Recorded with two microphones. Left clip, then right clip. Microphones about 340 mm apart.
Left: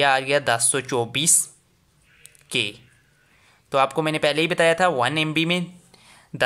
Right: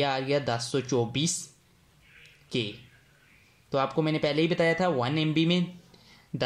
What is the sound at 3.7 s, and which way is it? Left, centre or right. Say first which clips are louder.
Speech: left 7 dB; left.